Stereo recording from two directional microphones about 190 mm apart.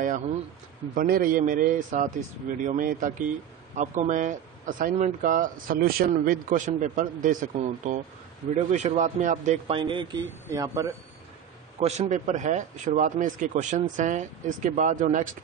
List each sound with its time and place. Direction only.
0.9 s speech: 50° right (ahead or behind)
9.8 s speech: 25° right (ahead or behind)
11.8 s speech: 35° right (ahead or behind)